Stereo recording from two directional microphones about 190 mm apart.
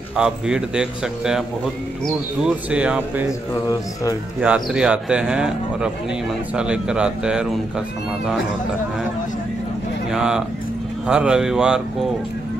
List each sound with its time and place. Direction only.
0.1 s speech: 5° right (ahead or behind)
3.6 s speech: 15° left (ahead or behind)
4.4 s speech: 5° right (ahead or behind)
10.1 s speech: 5° right (ahead or behind)